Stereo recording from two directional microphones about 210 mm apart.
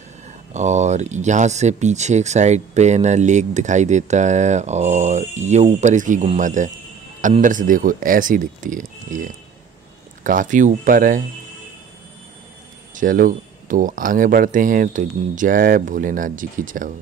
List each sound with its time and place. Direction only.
0.5 s speech: 35° right (ahead or behind)
12.9 s speech: 40° right (ahead or behind)